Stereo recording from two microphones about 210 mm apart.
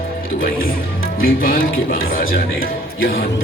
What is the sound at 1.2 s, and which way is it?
Speech, 45° left (ahead or behind).